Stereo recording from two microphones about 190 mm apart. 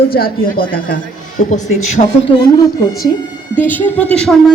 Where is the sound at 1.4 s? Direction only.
40° left (ahead or behind).